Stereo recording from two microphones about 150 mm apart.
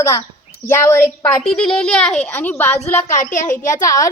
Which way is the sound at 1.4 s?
5° left (ahead or behind).